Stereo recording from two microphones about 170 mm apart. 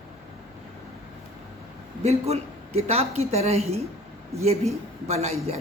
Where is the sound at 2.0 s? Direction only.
40° right (ahead or behind).